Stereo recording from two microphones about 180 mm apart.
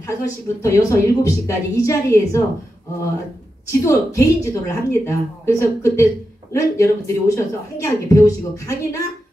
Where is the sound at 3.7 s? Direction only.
15° left (ahead or behind).